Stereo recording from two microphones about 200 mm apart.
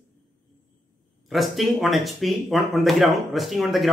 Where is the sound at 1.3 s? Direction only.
Centre (ahead or behind).